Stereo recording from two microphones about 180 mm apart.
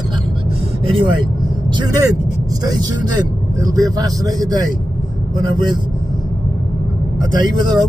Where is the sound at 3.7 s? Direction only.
20° right (ahead or behind).